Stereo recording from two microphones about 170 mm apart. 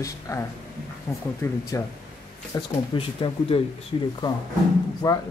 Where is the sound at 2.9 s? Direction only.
35° left (ahead or behind).